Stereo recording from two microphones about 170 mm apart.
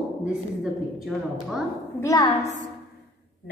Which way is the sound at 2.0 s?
20° left (ahead or behind).